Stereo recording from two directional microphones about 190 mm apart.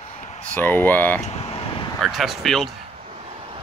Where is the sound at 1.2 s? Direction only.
35° left (ahead or behind).